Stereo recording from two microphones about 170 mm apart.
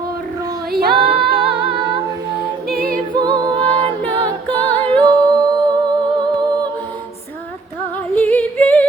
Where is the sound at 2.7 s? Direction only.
60° right (ahead or behind).